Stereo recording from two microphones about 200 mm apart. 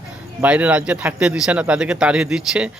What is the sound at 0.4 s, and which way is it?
Speech, 5° right (ahead or behind).